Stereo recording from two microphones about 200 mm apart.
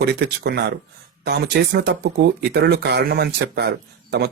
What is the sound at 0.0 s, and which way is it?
Speech, 55° right (ahead or behind).